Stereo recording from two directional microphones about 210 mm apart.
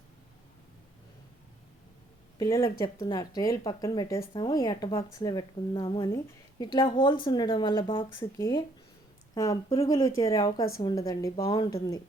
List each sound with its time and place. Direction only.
2.4 s speech: 15° left (ahead or behind)
8.4 s speech: 15° left (ahead or behind)